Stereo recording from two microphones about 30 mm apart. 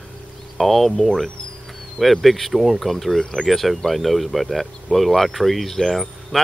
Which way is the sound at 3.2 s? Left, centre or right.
Left.